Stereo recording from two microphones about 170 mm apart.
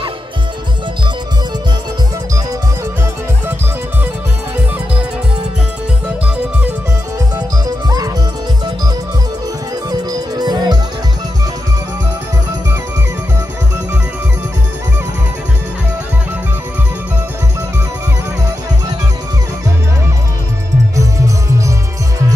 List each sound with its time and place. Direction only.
7.3 s music: 20° right (ahead or behind)
10.4 s music: 25° right (ahead or behind)